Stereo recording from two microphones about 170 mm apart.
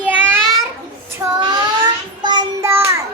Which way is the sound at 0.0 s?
10° right (ahead or behind).